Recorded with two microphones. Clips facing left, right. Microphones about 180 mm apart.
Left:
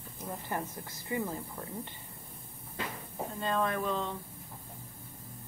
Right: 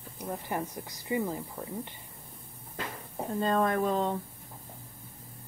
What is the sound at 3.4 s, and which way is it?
Speech, 40° right (ahead or behind).